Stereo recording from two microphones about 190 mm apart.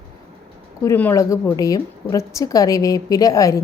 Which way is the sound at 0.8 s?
10° left (ahead or behind).